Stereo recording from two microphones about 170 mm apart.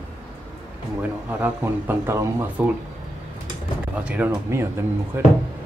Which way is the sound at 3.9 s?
10° right (ahead or behind).